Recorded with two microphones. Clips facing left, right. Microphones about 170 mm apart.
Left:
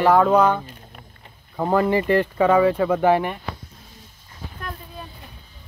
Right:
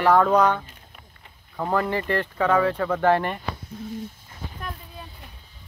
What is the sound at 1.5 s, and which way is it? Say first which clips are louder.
Speech: left 5 dB; 20° left (ahead or behind).